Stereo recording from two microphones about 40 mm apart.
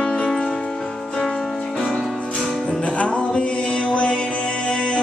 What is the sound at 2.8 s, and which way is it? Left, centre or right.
Music, left.